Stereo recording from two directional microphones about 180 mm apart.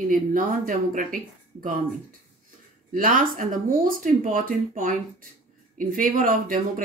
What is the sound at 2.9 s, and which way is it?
Speech, 50° right (ahead or behind).